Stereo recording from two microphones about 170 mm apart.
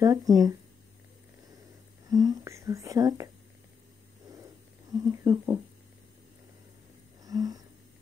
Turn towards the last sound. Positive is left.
turn(degrees=-20)  # may be behind; listen again after turning